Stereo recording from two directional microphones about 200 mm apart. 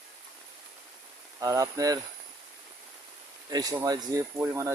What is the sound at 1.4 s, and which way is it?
Speech, 15° right (ahead or behind).